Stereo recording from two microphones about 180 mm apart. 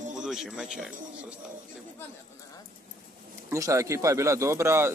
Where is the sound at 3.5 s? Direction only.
15° right (ahead or behind).